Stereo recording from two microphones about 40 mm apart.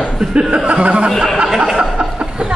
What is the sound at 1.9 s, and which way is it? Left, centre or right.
Chuckle, centre.